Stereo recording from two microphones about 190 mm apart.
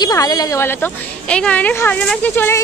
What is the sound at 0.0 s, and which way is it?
A woman's voice, 20° left (ahead or behind).